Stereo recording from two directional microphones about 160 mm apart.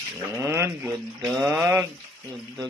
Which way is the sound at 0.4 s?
15° right (ahead or behind).